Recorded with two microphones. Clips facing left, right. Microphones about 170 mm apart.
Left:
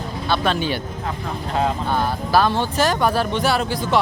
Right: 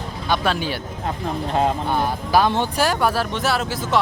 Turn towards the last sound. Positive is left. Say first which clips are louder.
# left 1 dB
turn(degrees=0)  # may be behind; listen again after turning